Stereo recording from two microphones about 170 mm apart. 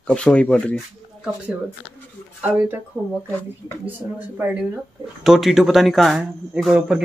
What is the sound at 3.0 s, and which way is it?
Speech, 20° right (ahead or behind).